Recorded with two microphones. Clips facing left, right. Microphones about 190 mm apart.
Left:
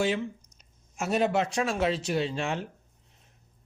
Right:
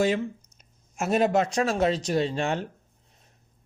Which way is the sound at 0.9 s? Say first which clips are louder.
Right 3 dB; 45° right (ahead or behind).